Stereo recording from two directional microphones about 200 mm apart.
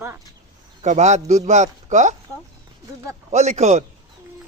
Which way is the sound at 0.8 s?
35° right (ahead or behind).